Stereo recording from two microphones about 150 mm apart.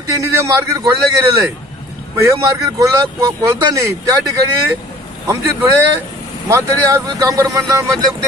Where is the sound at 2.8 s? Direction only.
25° right (ahead or behind).